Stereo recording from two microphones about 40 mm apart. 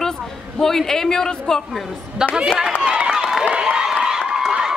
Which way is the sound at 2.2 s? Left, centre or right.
Centre.